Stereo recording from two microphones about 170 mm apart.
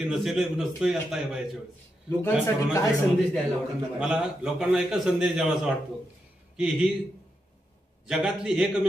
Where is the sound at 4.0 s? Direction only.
5° right (ahead or behind).